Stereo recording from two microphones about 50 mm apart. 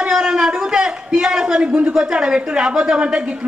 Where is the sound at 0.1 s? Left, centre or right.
Centre.